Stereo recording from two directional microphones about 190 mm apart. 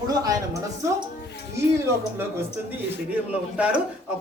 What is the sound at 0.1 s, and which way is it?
Speech, 20° right (ahead or behind).